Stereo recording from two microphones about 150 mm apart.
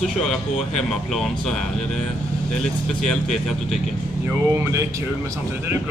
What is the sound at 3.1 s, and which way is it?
Speech, 5° left (ahead or behind).